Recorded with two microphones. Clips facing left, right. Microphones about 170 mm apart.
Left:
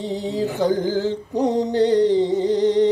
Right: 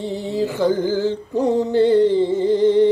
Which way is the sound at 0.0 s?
15° left (ahead or behind).